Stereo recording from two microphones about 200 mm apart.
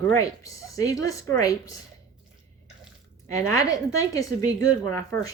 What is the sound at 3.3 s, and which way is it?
A woman's voice, 15° left (ahead or behind).